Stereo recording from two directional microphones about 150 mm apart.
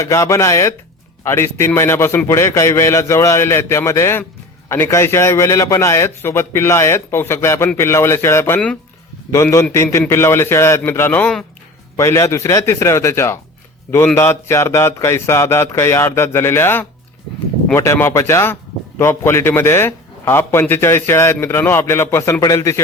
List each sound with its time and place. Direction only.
0.0 s a man's voice: 20° left (ahead or behind)